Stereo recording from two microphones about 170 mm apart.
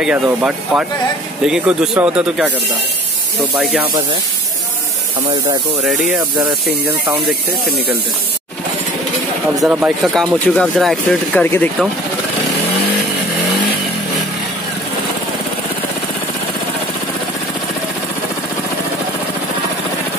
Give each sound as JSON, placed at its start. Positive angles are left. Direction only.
{"t": 0.0, "sound": "speech", "side_deg": -10}
{"t": 3.8, "sound": "speech", "side_deg": -30}
{"t": 5.8, "sound": "speech", "side_deg": -5}
{"t": 9.6, "sound": "speech", "side_deg": -5}